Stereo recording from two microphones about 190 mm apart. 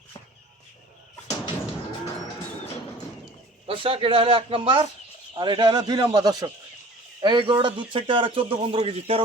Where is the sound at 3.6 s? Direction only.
30° right (ahead or behind).